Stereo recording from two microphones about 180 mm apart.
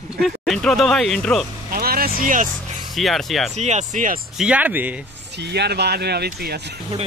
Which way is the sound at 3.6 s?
40° right (ahead or behind).